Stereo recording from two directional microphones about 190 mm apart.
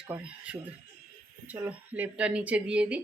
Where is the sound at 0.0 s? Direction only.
5° right (ahead or behind).